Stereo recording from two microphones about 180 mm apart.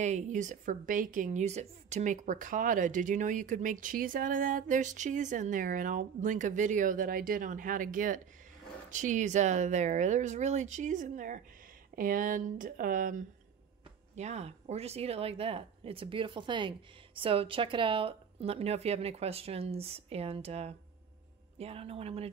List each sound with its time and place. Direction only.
0.0 s a woman's voice: 40° right (ahead or behind)
14.1 s speech: 40° right (ahead or behind)